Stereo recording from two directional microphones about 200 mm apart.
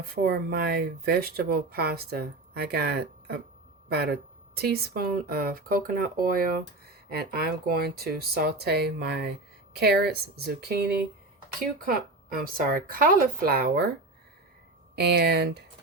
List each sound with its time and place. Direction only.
0.1 s speech: 50° right (ahead or behind)
11.8 s speech: 45° right (ahead or behind)
14.9 s speech: 55° right (ahead or behind)